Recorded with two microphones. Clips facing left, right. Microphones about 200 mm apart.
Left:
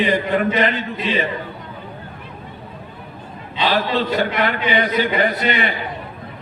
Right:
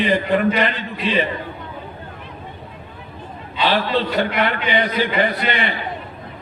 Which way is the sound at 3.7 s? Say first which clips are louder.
Left 1 dB; 45° left (ahead or behind).